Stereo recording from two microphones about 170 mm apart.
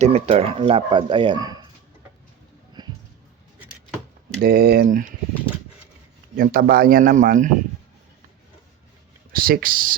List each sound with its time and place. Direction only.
0.0 s speech: 40° right (ahead or behind); by 1.6 s 25° right (ahead or behind)
2.8 s a sound: 25° right (ahead or behind)
4.4 s speech: 65° right (ahead or behind)
6.3 s speech: 60° right (ahead or behind)
9.3 s speech: 60° right (ahead or behind)